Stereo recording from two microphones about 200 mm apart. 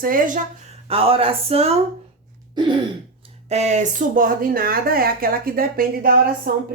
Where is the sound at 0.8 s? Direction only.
30° right (ahead or behind).